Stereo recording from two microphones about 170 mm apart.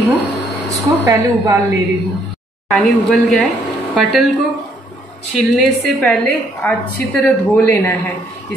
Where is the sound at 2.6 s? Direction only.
Centre (ahead or behind).